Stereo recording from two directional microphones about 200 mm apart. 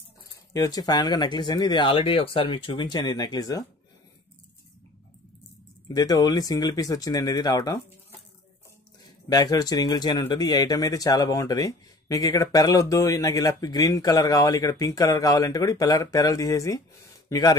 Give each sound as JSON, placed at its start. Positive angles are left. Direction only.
{"t": 0.5, "sound": "speech", "side_deg": 20}
{"t": 5.9, "sound": "speech", "side_deg": 20}
{"t": 9.3, "sound": "speech", "side_deg": 20}